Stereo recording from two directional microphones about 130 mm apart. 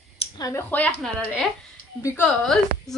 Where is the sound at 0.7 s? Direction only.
10° left (ahead or behind).